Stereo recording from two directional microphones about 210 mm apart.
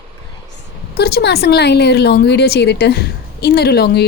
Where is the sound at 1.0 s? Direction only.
50° left (ahead or behind).